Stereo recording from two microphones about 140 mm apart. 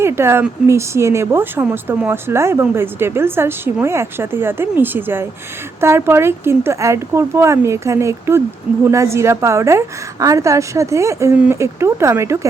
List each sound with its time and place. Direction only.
0.0 s a woman's voice: 20° right (ahead or behind)